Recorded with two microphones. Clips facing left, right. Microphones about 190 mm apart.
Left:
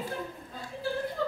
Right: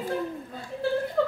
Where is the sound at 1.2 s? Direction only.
65° right (ahead or behind).